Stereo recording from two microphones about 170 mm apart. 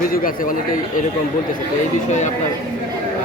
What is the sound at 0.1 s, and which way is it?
Speech, 55° left (ahead or behind).